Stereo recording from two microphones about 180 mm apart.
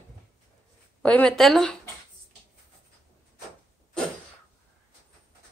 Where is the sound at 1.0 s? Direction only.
5° left (ahead or behind).